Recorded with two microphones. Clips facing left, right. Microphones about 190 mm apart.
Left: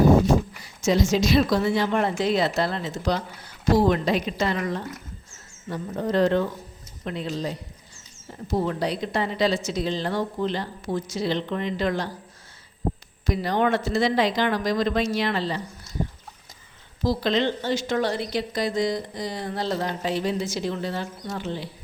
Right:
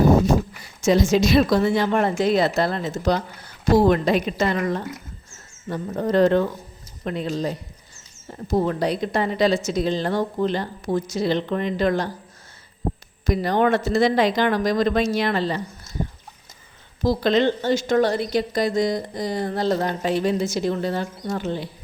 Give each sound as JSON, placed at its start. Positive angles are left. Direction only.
{"t": 0.9, "sound": "a woman's voice", "side_deg": -55}
{"t": 13.2, "sound": "a woman's voice", "side_deg": -50}
{"t": 17.0, "sound": "a woman's voice", "side_deg": -50}